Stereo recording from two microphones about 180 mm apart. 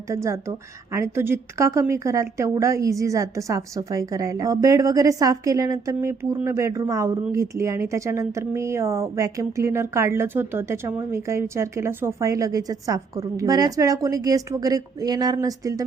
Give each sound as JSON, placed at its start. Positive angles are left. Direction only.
{"t": 0.1, "sound": "a woman's voice", "side_deg": -15}